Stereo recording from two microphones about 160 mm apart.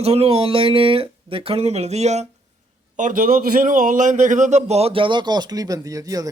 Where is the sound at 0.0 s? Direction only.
40° right (ahead or behind).